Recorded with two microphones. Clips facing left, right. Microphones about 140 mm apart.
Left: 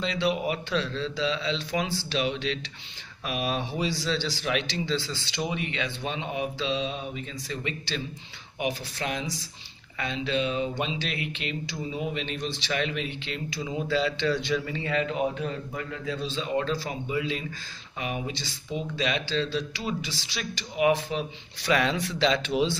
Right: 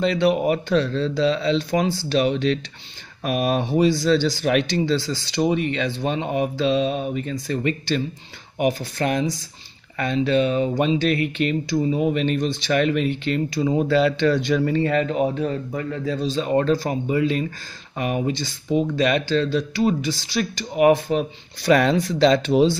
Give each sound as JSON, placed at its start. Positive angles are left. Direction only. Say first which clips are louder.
{"t": 0.0, "sound": "speech", "louder": "right 8 dB", "side_deg": -55}